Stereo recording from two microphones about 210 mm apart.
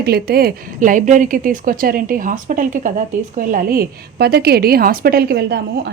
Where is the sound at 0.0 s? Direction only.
50° right (ahead or behind).